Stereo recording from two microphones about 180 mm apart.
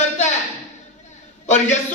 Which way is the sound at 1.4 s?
40° left (ahead or behind).